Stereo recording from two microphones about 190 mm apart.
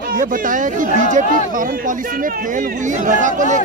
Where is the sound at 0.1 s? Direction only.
45° right (ahead or behind).